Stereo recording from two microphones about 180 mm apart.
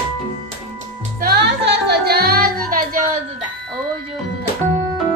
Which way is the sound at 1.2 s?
65° right (ahead or behind).